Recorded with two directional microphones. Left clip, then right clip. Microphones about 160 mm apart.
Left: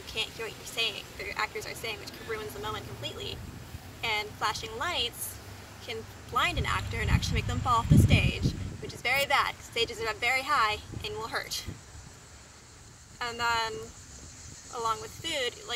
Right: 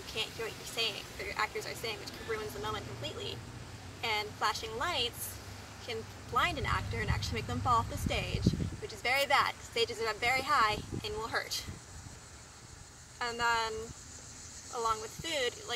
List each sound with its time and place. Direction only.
0.0 s speech: 5° right (ahead or behind)
13.2 s speech: 5° right (ahead or behind)